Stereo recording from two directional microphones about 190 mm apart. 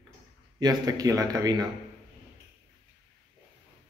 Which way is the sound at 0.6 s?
20° right (ahead or behind).